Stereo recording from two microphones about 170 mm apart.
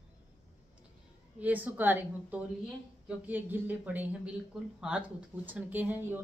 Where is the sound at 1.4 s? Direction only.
10° right (ahead or behind).